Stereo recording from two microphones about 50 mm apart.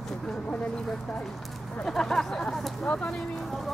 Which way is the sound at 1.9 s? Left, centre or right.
Centre.